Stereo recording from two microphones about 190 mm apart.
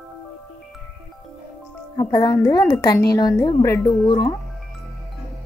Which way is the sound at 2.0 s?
25° left (ahead or behind).